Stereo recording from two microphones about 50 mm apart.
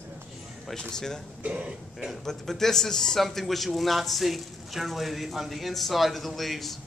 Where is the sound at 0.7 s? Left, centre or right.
Centre.